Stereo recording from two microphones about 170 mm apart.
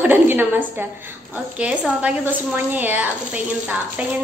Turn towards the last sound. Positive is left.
turn(degrees=-10)  # may be behind; listen again after turning